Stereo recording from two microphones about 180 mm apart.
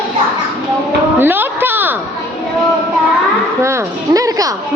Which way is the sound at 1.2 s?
10° right (ahead or behind).